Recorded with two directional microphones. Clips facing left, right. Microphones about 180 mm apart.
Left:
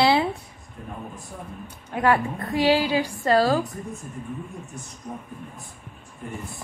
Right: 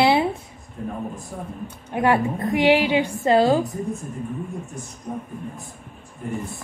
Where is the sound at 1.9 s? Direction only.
20° right (ahead or behind).